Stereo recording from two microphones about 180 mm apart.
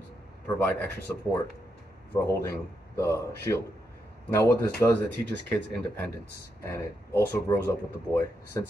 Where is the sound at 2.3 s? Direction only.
15° left (ahead or behind).